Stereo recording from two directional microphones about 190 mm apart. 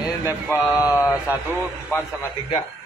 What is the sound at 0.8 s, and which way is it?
Speech, 15° left (ahead or behind).